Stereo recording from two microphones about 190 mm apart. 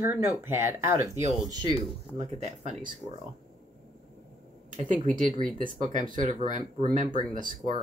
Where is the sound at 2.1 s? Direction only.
35° right (ahead or behind).